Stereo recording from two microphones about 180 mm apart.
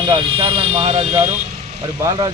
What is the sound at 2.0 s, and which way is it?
Speech, 20° right (ahead or behind).